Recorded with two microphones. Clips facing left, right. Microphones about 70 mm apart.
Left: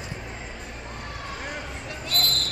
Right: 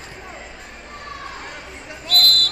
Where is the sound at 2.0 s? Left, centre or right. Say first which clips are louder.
Right 7 dB; left.